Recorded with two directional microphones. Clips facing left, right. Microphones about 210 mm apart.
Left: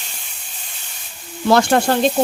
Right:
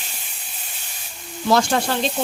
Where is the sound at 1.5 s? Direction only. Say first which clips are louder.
Left 4 dB; 60° left (ahead or behind).